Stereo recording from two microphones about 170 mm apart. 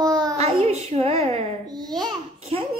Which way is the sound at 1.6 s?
25° right (ahead or behind).